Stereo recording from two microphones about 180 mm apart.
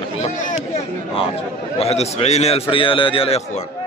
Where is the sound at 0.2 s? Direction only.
45° left (ahead or behind).